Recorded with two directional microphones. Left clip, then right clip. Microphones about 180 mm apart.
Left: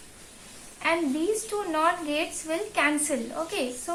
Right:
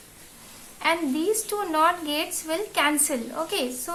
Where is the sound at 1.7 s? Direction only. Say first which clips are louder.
Right 3 dB; 30° right (ahead or behind).